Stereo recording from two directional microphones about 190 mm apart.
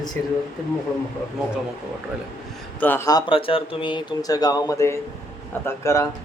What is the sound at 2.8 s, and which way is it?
Speech, 10° left (ahead or behind).